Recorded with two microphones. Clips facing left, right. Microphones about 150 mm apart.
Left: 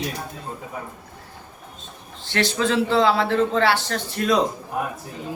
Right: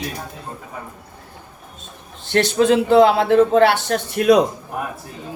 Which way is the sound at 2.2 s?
55° right (ahead or behind).